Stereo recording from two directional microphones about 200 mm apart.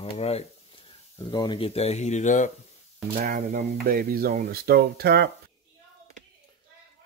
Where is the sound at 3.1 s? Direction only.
40° right (ahead or behind).